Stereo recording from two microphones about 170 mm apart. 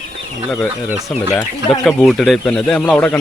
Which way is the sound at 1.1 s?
5° left (ahead or behind).